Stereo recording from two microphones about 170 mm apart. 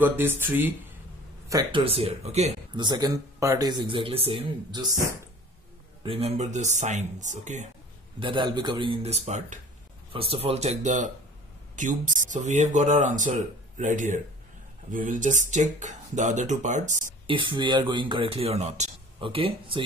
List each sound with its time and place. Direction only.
0.0 s speech: 10° right (ahead or behind)
1.5 s speech: 25° right (ahead or behind)
1.9 s speech: 35° right (ahead or behind)
2.7 s speech: 25° right (ahead or behind)
6.0 s speech: 35° right (ahead or behind)
8.2 s speech: 30° right (ahead or behind); by 17.0 s 45° right (ahead or behind)
17.3 s speech: 30° right (ahead or behind)